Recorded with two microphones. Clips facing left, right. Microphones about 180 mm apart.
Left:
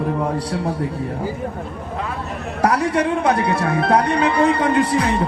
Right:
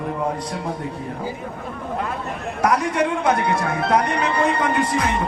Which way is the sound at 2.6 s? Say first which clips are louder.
Left 2 dB; 30° left (ahead or behind).